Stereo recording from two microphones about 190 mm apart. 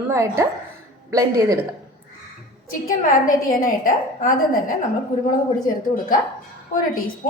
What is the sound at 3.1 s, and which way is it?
A woman's voice, 45° left (ahead or behind).